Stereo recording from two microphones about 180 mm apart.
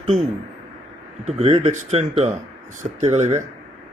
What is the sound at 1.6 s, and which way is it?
Speech, 40° right (ahead or behind).